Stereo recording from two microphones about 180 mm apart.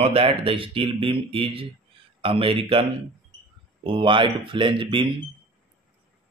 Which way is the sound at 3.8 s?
30° right (ahead or behind).